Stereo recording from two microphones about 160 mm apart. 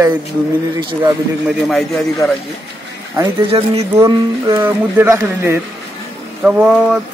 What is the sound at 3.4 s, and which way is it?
Speech, 35° right (ahead or behind).